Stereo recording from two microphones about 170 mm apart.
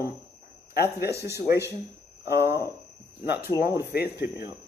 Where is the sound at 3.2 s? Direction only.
15° right (ahead or behind).